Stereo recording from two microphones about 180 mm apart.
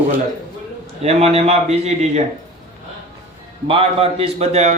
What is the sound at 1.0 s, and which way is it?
A man's voice, 35° right (ahead or behind).